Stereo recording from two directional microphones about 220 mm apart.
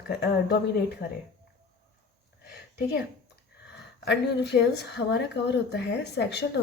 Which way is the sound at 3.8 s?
50° left (ahead or behind).